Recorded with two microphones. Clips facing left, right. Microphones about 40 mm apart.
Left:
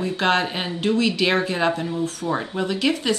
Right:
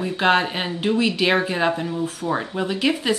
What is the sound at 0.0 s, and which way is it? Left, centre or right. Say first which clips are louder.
Speech: right 2 dB; centre.